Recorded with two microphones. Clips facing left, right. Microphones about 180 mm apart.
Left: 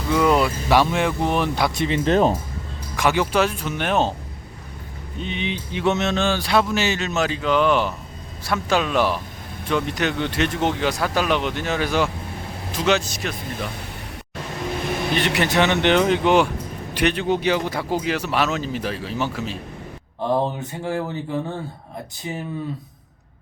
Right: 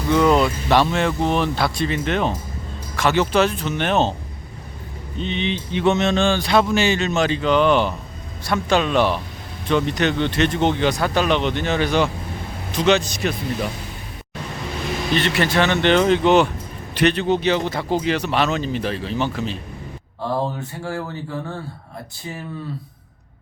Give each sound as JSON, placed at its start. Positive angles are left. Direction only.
{"t": 0.1, "sound": "speech", "side_deg": 5}
{"t": 2.0, "sound": "speech", "side_deg": 35}
{"t": 2.9, "sound": "speech", "side_deg": 10}
{"t": 5.2, "sound": "speech", "side_deg": 10}
{"t": 15.1, "sound": "speech", "side_deg": 15}
{"t": 20.2, "sound": "mantra", "side_deg": 20}